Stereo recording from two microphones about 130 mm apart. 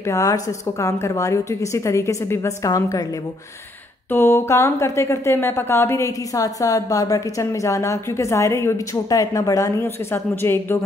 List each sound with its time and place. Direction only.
0.0 s a woman's voice: 25° left (ahead or behind)
4.1 s a woman's voice: 20° left (ahead or behind)